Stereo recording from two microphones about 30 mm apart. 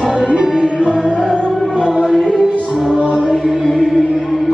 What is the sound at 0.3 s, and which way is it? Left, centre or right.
Music, right.